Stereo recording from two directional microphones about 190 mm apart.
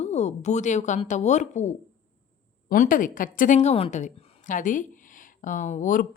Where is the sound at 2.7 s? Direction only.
45° left (ahead or behind).